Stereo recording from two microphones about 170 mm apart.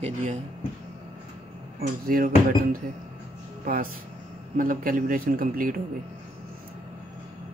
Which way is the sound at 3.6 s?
55° right (ahead or behind).